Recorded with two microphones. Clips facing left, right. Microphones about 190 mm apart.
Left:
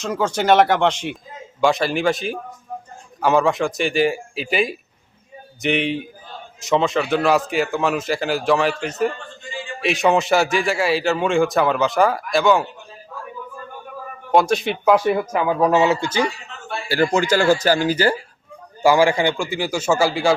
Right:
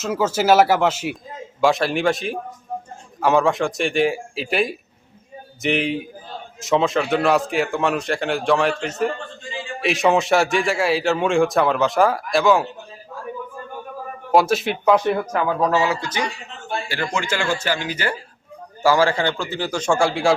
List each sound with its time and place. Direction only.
0.0 s a man's voice: 5° right (ahead or behind)
14.3 s speech: centre (ahead or behind); by 16.2 s 25° left (ahead or behind)
16.9 s speech: 40° left (ahead or behind)
18.8 s speech: 15° left (ahead or behind)